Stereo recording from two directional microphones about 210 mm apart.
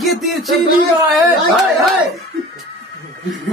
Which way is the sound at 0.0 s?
Centre (ahead or behind).